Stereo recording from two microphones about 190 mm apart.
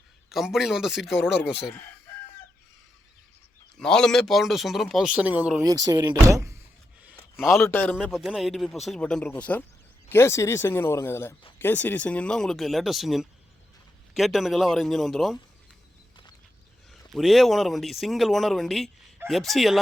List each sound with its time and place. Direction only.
0.3 s speech: centre (ahead or behind)
3.8 s speech: 5° left (ahead or behind)
5.6 s speech: 20° right (ahead or behind)
7.0 s a sound: 5° right (ahead or behind)
7.6 s speech: 10° left (ahead or behind)
7.9 s speech: centre (ahead or behind)
16.9 s speech: centre (ahead or behind)